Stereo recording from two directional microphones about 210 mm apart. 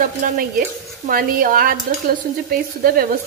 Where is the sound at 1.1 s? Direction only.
40° right (ahead or behind).